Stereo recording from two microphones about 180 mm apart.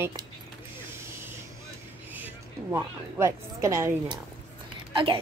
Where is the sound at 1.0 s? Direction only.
15° right (ahead or behind).